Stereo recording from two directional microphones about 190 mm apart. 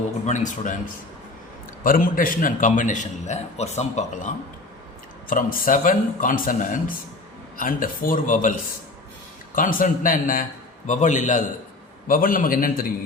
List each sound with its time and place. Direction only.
0.3 s a man's voice: 40° left (ahead or behind)
1.8 s a man's voice: 45° left (ahead or behind)
5.3 s a man's voice: 45° left (ahead or behind)
9.6 s a man's voice: 45° left (ahead or behind)